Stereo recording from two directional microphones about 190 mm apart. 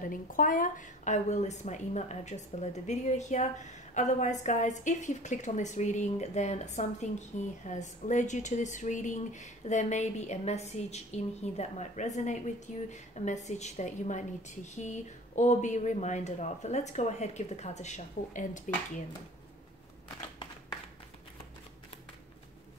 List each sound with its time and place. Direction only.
0.0 s a woman's voice: 45° left (ahead or behind)